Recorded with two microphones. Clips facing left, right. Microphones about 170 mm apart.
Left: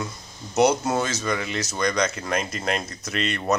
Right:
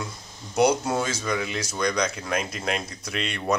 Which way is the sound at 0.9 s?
5° right (ahead or behind).